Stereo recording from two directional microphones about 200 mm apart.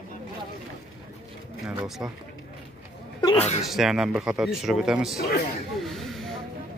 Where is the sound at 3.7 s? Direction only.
Centre (ahead or behind).